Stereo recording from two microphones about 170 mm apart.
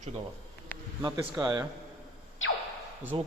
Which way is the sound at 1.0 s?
25° right (ahead or behind).